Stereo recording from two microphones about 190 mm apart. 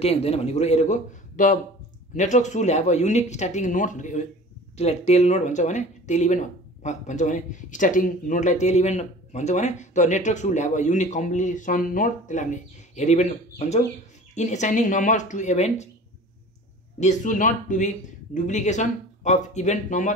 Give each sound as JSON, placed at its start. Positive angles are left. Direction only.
{"t": 0.0, "sound": "speech", "side_deg": 30}
{"t": 17.0, "sound": "speech", "side_deg": 40}